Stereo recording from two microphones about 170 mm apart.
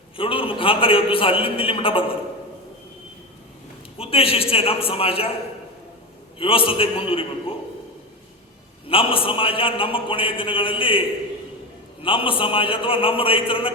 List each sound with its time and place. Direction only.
0.2 s a man's voice: 30° left (ahead or behind)
3.9 s a man's voice: 35° left (ahead or behind)
6.4 s a man's voice: 30° left (ahead or behind)
8.9 s a man's voice: 30° left (ahead or behind)
12.0 s a man's voice: 30° left (ahead or behind)